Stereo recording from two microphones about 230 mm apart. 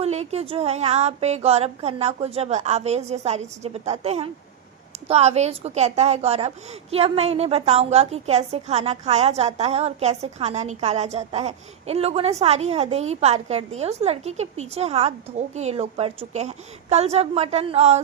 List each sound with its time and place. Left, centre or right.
0.0 s a woman's voice: right